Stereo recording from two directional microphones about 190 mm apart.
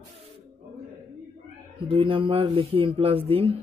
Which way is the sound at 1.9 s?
30° right (ahead or behind).